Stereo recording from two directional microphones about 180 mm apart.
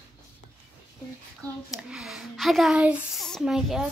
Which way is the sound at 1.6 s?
Centre (ahead or behind).